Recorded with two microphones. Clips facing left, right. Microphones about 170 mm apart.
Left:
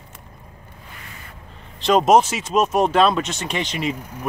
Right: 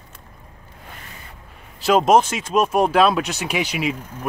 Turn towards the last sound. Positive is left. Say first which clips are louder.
# right 1 dB
turn(degrees=-5)  # may be behind; listen again after turning